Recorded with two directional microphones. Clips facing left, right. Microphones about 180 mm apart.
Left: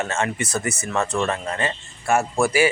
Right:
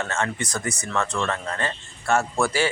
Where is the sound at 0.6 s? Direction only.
5° left (ahead or behind).